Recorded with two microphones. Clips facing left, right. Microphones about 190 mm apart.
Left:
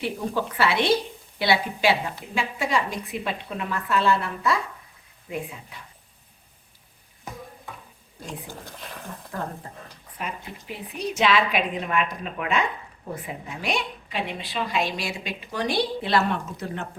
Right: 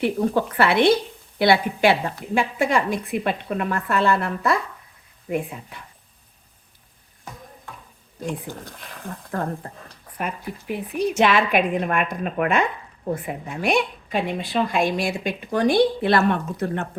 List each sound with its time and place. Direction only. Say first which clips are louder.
0.0 s a woman's voice: right 6 dB; 55° right (ahead or behind)
9.3 s a woman's voice: right 5 dB; 60° right (ahead or behind)
10.7 s a woman's voice: right 7 dB; 50° right (ahead or behind)